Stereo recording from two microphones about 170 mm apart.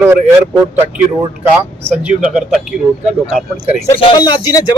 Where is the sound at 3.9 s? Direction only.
25° left (ahead or behind).